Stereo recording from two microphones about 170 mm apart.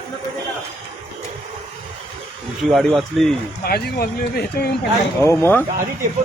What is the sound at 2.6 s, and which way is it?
Speech, centre (ahead or behind).